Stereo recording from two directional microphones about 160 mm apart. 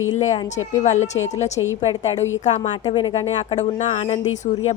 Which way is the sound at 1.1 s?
15° left (ahead or behind).